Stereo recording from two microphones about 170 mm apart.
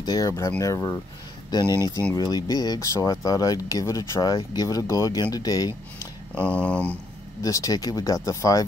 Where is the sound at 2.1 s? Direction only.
20° left (ahead or behind).